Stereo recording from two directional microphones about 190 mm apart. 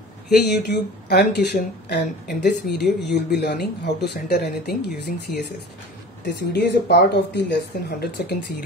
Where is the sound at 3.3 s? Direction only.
55° left (ahead or behind).